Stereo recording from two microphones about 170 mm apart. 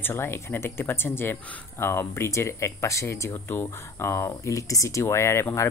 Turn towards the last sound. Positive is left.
turn(degrees=15)  # may be behind; listen again after turning